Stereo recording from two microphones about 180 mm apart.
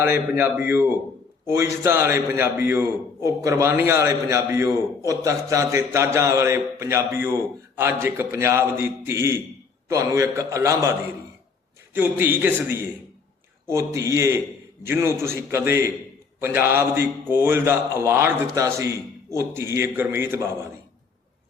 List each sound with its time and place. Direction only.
0.0 s a man's voice: 15° right (ahead or behind)
11.9 s a man's voice: 10° right (ahead or behind)